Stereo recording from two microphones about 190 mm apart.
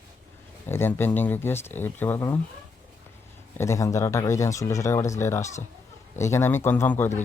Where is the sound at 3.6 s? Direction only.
15° left (ahead or behind).